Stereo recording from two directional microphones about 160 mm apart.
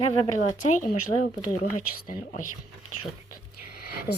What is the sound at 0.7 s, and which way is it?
Speech, 50° left (ahead or behind).